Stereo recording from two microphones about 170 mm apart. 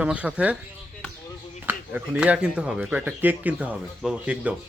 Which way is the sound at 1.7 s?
10° right (ahead or behind).